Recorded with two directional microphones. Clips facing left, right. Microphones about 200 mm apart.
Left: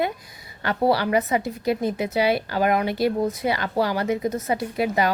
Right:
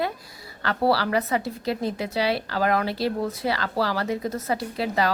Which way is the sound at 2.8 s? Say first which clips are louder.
Left 4 dB; 30° right (ahead or behind).